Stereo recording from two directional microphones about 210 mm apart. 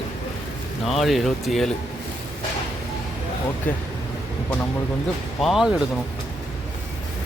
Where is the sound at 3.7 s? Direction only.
5° left (ahead or behind).